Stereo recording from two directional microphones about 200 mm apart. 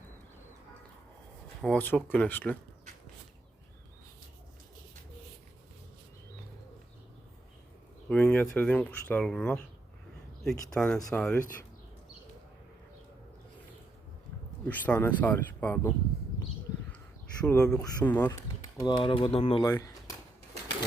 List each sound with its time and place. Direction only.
1.6 s speech: 10° left (ahead or behind)
8.1 s speech: 5° left (ahead or behind)
14.7 s speech: 10° left (ahead or behind)
17.4 s speech: 5° left (ahead or behind)
18.8 s speech: 20° left (ahead or behind)
19.6 s speech: 15° left (ahead or behind)